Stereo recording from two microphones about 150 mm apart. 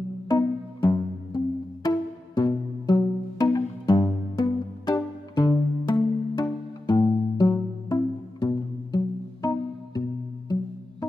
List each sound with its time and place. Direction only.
0.8 s music: 25° left (ahead or behind)